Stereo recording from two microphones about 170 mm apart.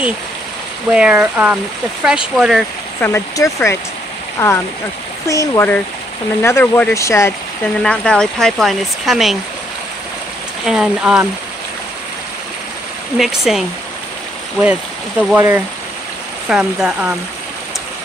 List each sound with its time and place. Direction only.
0.9 s speech: 5° right (ahead or behind)
3.0 s speech: 15° left (ahead or behind)
7.8 s speech: 5° left (ahead or behind)
10.6 s speech: 5° right (ahead or behind)
13.2 s speech: centre (ahead or behind)